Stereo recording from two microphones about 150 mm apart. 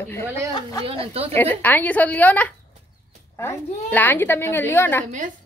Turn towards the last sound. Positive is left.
turn(degrees=15)  # may be behind; listen again after turning